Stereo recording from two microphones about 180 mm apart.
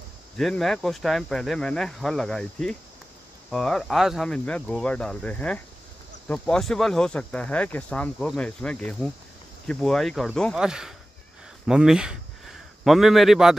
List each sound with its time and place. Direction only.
0.4 s speech: centre (ahead or behind)